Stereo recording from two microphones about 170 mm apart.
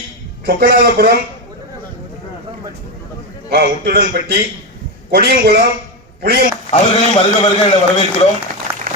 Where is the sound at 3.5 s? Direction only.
65° right (ahead or behind).